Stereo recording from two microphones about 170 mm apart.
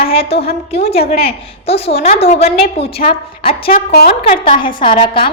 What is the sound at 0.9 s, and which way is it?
Speech, 65° left (ahead or behind).